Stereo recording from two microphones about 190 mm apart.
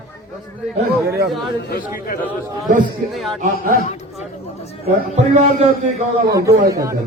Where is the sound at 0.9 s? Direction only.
55° right (ahead or behind).